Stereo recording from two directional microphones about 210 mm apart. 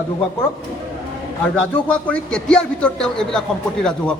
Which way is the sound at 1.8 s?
5° left (ahead or behind).